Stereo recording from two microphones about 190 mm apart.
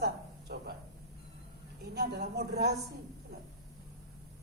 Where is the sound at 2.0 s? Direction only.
55° right (ahead or behind).